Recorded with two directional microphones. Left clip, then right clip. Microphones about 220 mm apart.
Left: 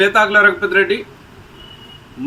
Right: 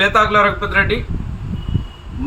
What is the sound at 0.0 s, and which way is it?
Speech, 10° right (ahead or behind).